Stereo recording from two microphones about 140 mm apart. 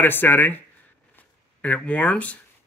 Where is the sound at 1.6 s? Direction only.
10° left (ahead or behind).